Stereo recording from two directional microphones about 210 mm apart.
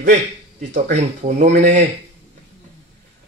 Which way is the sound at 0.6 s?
35° right (ahead or behind).